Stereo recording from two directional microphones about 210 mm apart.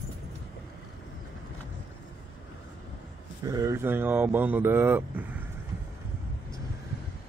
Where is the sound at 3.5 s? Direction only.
15° right (ahead or behind).